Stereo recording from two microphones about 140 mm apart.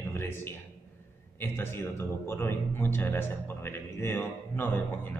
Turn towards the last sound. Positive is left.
turn(degrees=15)  # may be behind; listen again after turning